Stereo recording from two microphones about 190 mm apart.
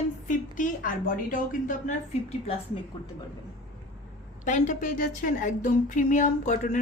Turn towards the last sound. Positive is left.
turn(degrees=40)  # may be behind; listen again after turning